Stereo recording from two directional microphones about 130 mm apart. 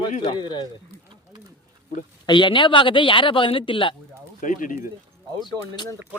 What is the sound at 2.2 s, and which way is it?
Speech, 35° left (ahead or behind).